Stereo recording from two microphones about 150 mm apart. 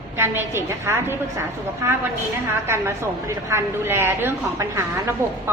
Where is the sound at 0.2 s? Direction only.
15° right (ahead or behind).